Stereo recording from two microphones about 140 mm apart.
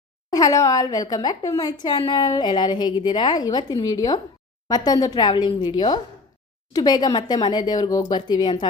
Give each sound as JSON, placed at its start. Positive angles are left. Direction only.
{"t": 0.3, "sound": "speech", "side_deg": 25}